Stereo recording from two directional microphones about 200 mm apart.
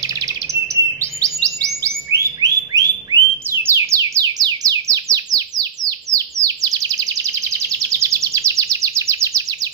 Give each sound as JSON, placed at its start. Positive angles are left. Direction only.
{"t": 1.2, "sound": "bird", "side_deg": -15}
{"t": 8.0, "sound": "chirp", "side_deg": -15}